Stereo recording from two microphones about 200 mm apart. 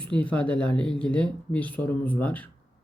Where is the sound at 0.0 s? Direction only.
5° left (ahead or behind).